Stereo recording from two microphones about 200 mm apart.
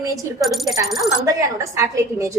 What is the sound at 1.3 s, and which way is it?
A woman's voice, 15° right (ahead or behind).